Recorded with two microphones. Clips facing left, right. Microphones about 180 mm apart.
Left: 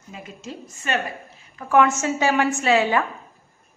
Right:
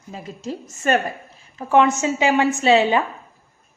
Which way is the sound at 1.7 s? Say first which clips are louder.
Right 2 dB; 20° right (ahead or behind).